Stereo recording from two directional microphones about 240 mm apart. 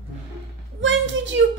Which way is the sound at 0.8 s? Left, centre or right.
Right.